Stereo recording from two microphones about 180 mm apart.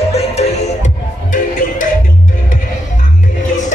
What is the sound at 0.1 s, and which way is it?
Music, 35° left (ahead or behind).